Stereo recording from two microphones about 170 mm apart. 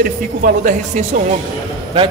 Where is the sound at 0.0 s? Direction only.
50° right (ahead or behind).